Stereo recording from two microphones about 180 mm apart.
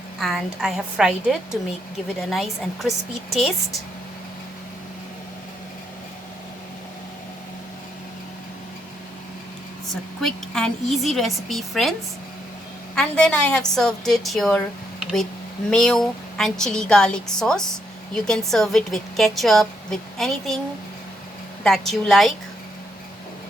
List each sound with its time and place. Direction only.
0.2 s a woman's voice: centre (ahead or behind)
10.2 s a woman's voice: 5° left (ahead or behind)
13.0 s a woman's voice: 5° left (ahead or behind)
21.6 s a woman's voice: centre (ahead or behind)